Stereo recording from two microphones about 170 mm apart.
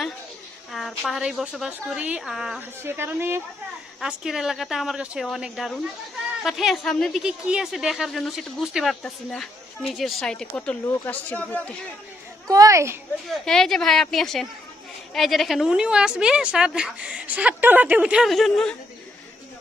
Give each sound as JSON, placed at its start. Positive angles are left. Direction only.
{"t": 0.7, "sound": "a woman's voice", "side_deg": 0}
{"t": 2.8, "sound": "a woman's voice", "side_deg": -15}
{"t": 4.0, "sound": "a woman's voice", "side_deg": -5}
{"t": 12.4, "sound": "a woman's voice", "side_deg": -20}
{"t": 13.3, "sound": "a woman's voice", "side_deg": 5}